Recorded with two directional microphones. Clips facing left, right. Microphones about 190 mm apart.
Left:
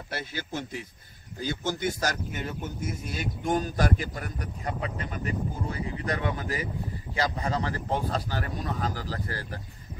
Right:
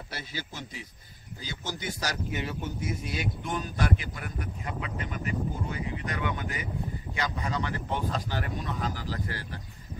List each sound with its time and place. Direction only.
0.1 s speech: 55° left (ahead or behind)